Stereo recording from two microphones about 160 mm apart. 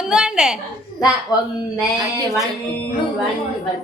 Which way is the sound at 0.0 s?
5° right (ahead or behind).